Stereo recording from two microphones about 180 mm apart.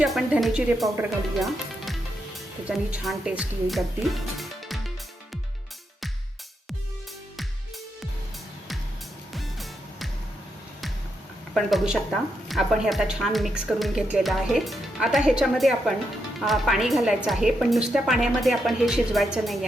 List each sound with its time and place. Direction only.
0.0 s speech: centre (ahead or behind)
9.3 s music: centre (ahead or behind)
11.5 s speech: centre (ahead or behind)